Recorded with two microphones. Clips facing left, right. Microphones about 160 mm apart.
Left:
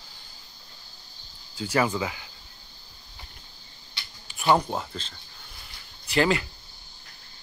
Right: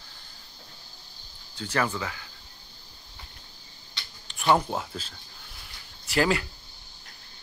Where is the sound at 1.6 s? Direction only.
10° left (ahead or behind).